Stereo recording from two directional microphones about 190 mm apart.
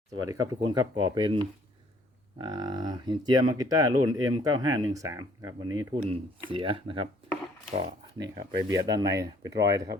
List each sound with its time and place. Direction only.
0.3 s speech: 20° right (ahead or behind)
2.4 s speech: 25° right (ahead or behind)
8.4 s speech: 20° right (ahead or behind)